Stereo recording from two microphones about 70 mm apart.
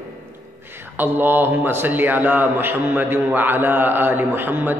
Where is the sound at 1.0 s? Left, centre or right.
Right.